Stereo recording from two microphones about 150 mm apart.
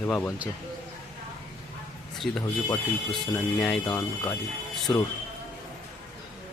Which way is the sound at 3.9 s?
20° left (ahead or behind).